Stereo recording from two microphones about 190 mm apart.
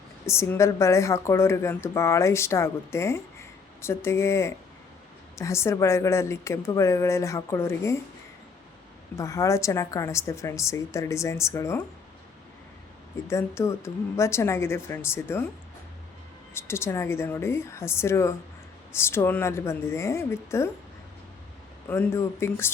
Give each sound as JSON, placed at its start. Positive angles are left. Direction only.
{"t": 0.3, "sound": "a woman's voice", "side_deg": 15}
{"t": 9.1, "sound": "a woman's voice", "side_deg": 15}
{"t": 13.2, "sound": "a woman's voice", "side_deg": 15}
{"t": 16.6, "sound": "a woman's voice", "side_deg": 15}
{"t": 21.8, "sound": "a woman's voice", "side_deg": 10}